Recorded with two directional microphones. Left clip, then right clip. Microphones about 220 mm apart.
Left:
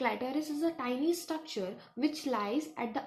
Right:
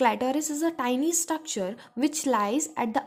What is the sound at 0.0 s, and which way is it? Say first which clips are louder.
A woman's voice: right 9 dB; 55° right (ahead or behind).